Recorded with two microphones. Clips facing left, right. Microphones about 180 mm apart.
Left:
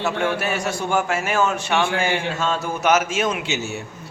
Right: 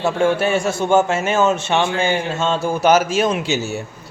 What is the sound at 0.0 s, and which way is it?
A man's voice, 30° right (ahead or behind).